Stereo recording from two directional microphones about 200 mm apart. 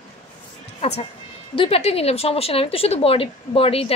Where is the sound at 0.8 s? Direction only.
30° left (ahead or behind).